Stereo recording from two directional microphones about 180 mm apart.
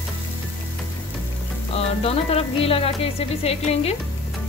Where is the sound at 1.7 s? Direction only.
35° left (ahead or behind).